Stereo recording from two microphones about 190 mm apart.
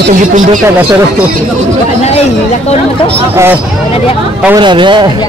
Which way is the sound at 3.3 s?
10° right (ahead or behind).